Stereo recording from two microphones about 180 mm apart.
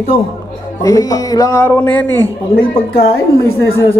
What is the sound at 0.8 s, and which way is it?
A woman's voice, 20° left (ahead or behind).